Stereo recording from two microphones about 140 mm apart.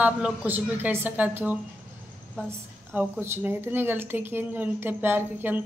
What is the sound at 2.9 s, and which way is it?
Speech, 15° right (ahead or behind).